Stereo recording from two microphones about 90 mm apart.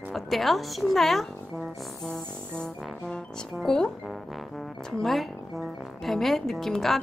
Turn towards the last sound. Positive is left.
turn(degrees=5)  # may be behind; listen again after turning